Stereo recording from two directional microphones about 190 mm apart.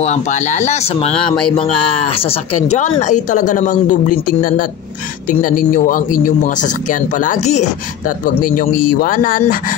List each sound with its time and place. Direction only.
0.0 s speech: 40° left (ahead or behind)
8.4 s speech: 50° left (ahead or behind)